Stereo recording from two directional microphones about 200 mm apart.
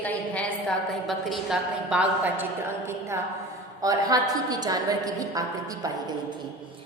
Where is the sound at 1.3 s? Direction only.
5° right (ahead or behind).